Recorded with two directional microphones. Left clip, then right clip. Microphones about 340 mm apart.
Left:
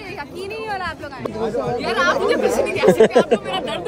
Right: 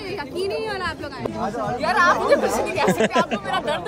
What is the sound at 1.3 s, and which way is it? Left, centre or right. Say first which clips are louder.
A man's voice: left 5 dB; centre.